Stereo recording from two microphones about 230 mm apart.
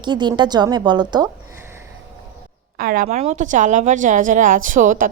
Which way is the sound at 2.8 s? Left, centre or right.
Right.